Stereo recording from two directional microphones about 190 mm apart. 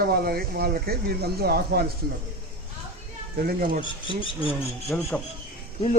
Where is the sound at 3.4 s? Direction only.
50° right (ahead or behind).